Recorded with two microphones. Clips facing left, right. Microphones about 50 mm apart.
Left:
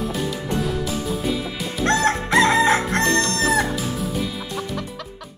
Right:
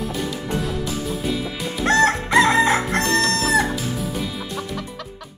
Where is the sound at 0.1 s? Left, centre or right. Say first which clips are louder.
Left 1 dB; centre.